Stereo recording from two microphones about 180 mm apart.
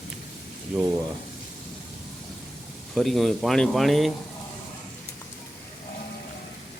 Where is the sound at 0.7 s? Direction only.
Centre (ahead or behind).